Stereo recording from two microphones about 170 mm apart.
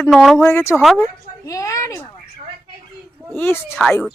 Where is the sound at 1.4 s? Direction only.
20° left (ahead or behind).